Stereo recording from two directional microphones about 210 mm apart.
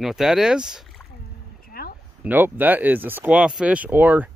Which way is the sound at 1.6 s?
45° left (ahead or behind).